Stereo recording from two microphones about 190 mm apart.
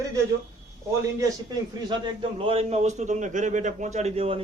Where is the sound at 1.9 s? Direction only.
25° right (ahead or behind).